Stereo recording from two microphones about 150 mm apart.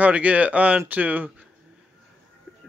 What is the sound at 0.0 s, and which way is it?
Speech, 10° right (ahead or behind).